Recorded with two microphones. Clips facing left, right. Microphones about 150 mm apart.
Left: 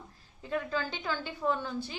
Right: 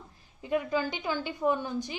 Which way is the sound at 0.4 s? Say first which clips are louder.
Right 4 dB; 15° right (ahead or behind).